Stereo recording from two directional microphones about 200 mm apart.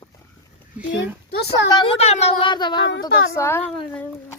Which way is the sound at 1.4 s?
60° left (ahead or behind).